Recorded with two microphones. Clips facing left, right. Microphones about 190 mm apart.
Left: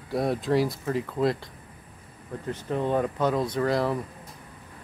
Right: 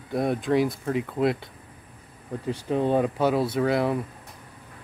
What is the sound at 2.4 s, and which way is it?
Speech, 15° right (ahead or behind).